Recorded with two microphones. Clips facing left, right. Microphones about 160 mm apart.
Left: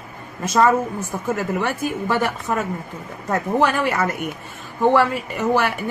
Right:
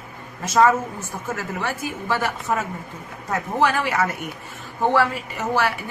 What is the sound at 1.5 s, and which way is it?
Speech, 55° left (ahead or behind).